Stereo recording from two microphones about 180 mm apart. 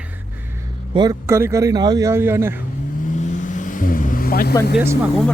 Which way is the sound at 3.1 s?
40° left (ahead or behind).